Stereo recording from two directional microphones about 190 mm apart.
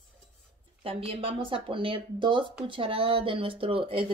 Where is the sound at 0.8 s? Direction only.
30° right (ahead or behind).